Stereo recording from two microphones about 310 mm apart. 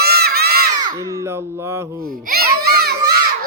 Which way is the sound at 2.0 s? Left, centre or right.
Right.